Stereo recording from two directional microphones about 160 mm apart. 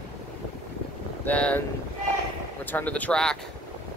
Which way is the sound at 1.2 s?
10° left (ahead or behind).